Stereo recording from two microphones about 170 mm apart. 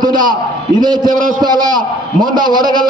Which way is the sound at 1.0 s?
50° right (ahead or behind).